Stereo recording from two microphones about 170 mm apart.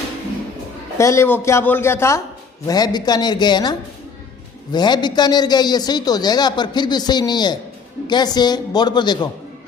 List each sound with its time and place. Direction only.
0.9 s a man's voice: 15° left (ahead or behind)